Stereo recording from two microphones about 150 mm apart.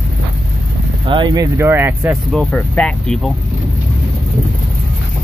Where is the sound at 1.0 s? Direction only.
30° right (ahead or behind); by 2.2 s 15° right (ahead or behind).